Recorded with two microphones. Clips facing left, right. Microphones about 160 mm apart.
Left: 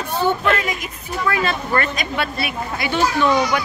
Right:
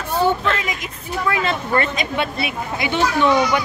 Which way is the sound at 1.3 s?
25° right (ahead or behind).